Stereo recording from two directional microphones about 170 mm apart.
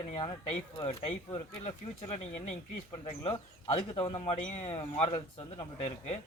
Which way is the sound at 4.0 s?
25° left (ahead or behind).